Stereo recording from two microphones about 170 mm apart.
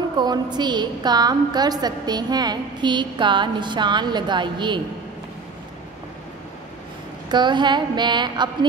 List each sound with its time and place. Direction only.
0.2 s a woman's voice: 25° right (ahead or behind)
7.2 s a woman's voice: 25° right (ahead or behind)